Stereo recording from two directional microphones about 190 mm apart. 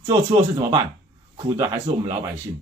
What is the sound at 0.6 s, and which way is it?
Speech, 20° right (ahead or behind).